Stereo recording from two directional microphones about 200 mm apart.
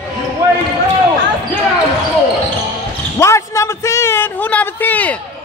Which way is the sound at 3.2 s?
15° left (ahead or behind).